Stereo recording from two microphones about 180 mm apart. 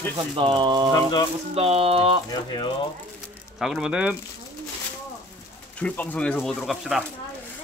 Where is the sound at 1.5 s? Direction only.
35° right (ahead or behind).